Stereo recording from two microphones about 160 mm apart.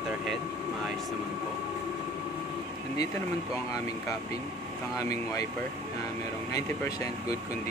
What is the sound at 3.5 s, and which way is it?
Speech, 20° left (ahead or behind).